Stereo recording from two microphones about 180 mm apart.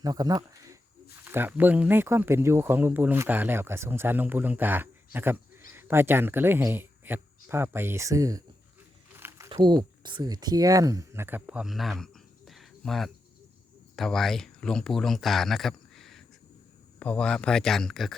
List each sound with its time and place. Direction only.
0.0 s speech: 20° right (ahead or behind)
9.1 s a sound: 15° right (ahead or behind)
9.5 s speech: 25° right (ahead or behind); by 18.1 s centre (ahead or behind)